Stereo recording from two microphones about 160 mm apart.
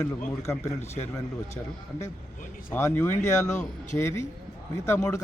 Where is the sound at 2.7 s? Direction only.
15° left (ahead or behind).